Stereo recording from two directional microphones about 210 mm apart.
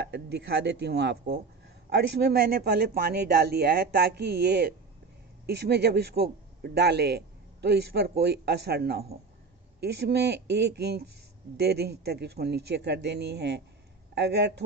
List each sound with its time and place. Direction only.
0.0 s a man's voice: 55° right (ahead or behind)